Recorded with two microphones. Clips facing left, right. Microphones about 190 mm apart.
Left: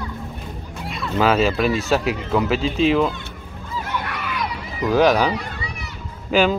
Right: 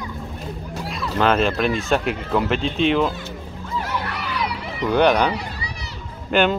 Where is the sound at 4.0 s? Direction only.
35° right (ahead or behind).